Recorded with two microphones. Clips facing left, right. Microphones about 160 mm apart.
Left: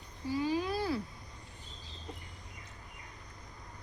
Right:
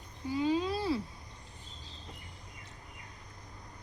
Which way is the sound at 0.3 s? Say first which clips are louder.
Right 2 dB; 20° right (ahead or behind).